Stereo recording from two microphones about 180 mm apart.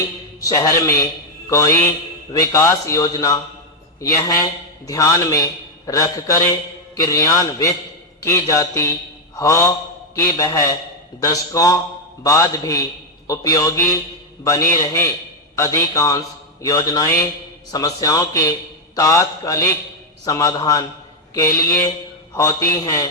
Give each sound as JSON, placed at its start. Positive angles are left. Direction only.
{"t": 0.3, "sound": "a man's voice", "side_deg": 20}